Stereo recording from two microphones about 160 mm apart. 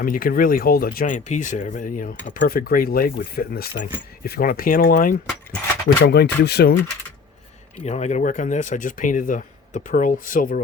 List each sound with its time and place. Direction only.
0.0 s speech: 65° left (ahead or behind)
6.0 s speech: 90° left
7.9 s speech: 45° left (ahead or behind)